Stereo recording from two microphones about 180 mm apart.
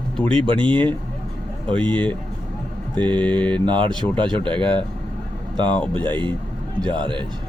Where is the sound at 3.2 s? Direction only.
10° left (ahead or behind).